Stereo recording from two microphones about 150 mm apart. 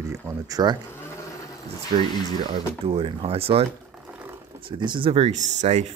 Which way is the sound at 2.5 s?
40° right (ahead or behind).